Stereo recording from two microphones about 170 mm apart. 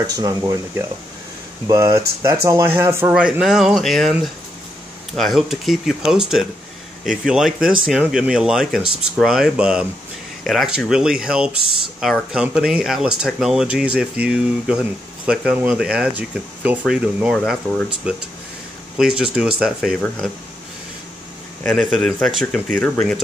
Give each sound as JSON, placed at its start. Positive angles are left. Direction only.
{"t": 0.0, "sound": "speech", "side_deg": -20}
{"t": 18.9, "sound": "speech", "side_deg": -5}
{"t": 21.6, "sound": "speech", "side_deg": 0}